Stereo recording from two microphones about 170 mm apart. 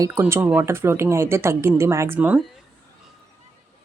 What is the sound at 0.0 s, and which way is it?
Speech, 15° right (ahead or behind).